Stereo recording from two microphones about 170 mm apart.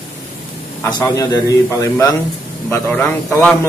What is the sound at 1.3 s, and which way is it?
Speech, 20° left (ahead or behind).